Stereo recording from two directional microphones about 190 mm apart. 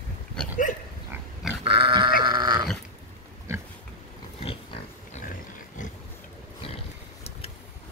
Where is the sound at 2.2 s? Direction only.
25° right (ahead or behind).